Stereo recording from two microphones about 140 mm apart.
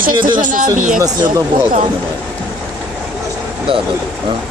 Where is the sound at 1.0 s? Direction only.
25° right (ahead or behind).